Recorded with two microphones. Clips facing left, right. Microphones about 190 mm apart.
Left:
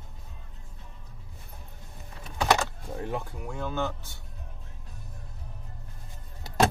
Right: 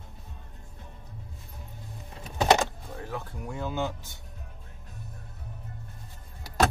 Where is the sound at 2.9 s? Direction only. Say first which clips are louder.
Left 4 dB; 25° left (ahead or behind).